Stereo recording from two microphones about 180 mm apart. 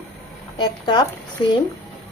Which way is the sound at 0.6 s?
25° left (ahead or behind).